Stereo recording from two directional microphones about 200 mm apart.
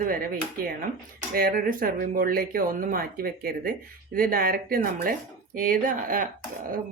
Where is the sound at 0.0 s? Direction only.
45° right (ahead or behind).